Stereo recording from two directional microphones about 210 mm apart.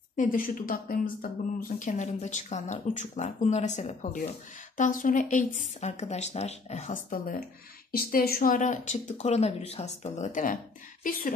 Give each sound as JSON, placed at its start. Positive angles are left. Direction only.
{"t": 0.1, "sound": "a woman's voice", "side_deg": 40}